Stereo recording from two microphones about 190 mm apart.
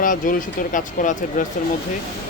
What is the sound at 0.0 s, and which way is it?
Speech, 45° left (ahead or behind).